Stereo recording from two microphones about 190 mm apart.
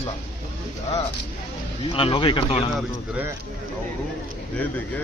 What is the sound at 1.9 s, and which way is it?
Speech, 30° left (ahead or behind).